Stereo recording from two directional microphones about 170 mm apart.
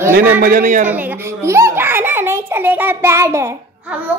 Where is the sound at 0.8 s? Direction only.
10° right (ahead or behind).